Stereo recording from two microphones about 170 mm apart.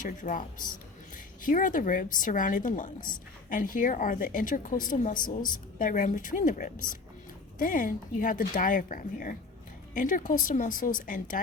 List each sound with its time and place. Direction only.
0.0 s speech: 50° left (ahead or behind)